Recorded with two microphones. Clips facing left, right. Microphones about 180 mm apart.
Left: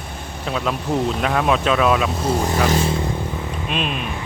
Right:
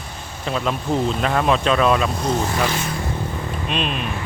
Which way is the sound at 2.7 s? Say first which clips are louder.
Left 6 dB; 30° left (ahead or behind).